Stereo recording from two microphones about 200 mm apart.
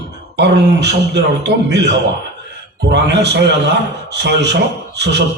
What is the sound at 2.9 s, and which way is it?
A man's voice, 55° right (ahead or behind).